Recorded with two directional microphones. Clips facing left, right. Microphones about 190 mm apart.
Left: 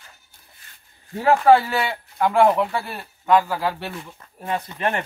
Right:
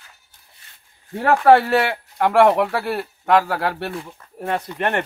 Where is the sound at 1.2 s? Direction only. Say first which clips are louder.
Right 1 dB; 65° right (ahead or behind).